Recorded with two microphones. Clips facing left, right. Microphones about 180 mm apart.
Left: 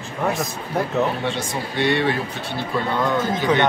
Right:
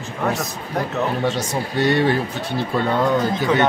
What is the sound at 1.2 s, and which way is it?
Speech, 40° right (ahead or behind).